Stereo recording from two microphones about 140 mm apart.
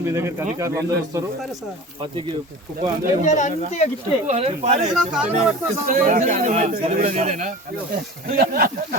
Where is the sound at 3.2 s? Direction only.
60° left (ahead or behind).